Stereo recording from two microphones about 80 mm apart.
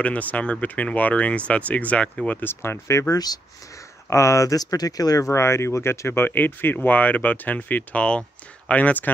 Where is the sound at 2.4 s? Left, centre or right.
Left.